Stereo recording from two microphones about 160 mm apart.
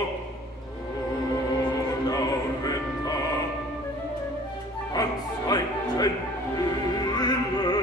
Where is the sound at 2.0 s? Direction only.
25° left (ahead or behind).